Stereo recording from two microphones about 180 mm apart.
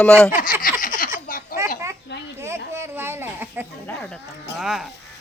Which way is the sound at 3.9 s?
10° left (ahead or behind).